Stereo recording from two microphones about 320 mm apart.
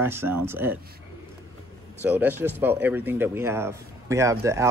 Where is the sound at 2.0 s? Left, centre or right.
Centre.